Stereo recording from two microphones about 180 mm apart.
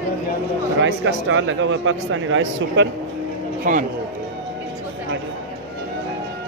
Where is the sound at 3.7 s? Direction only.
45° right (ahead or behind).